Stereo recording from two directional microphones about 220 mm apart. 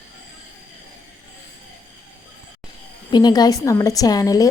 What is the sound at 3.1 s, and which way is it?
A woman's voice, 20° left (ahead or behind).